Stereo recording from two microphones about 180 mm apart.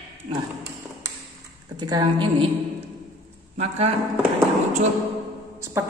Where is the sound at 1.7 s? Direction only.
25° right (ahead or behind).